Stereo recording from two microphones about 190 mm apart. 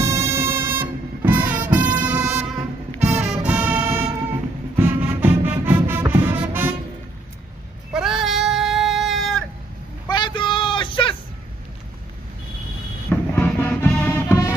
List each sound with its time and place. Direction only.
0.0 s music: 15° right (ahead or behind)
7.9 s a sound: centre (ahead or behind)
10.0 s vehicle: 25° left (ahead or behind)
13.1 s music: 10° left (ahead or behind)